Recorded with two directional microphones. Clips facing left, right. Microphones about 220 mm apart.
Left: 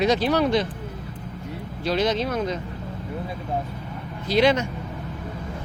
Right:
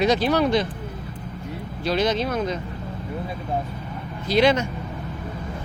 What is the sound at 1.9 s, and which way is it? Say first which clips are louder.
Speech: right 1 dB; 30° left (ahead or behind).